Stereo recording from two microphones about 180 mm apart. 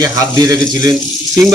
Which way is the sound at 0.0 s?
20° right (ahead or behind).